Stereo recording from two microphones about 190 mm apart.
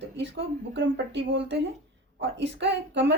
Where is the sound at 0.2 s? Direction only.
70° right (ahead or behind).